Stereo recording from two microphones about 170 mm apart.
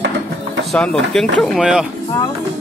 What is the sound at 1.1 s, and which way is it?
Speech, 5° left (ahead or behind).